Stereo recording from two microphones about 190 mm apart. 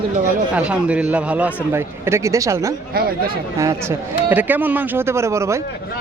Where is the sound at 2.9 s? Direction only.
50° right (ahead or behind).